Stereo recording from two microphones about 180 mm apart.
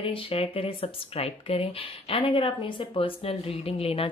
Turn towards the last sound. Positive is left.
turn(degrees=30)  # may be behind; listen again after turning